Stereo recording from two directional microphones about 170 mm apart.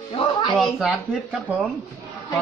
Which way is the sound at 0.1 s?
30° left (ahead or behind).